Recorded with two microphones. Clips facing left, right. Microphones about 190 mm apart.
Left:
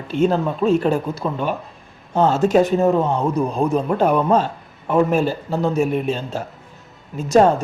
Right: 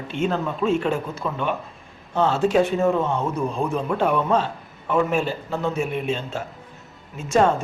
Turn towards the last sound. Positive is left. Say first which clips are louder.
# left 5 dB
turn(degrees=40)  # may be behind; listen again after turning